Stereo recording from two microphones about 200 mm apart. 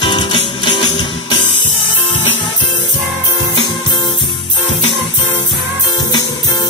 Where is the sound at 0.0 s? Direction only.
25° left (ahead or behind).